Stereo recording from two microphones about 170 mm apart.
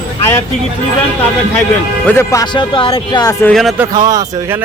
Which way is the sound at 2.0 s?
15° left (ahead or behind).